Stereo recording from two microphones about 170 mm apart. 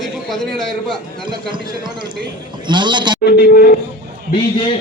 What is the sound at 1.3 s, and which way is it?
Speech, 25° right (ahead or behind).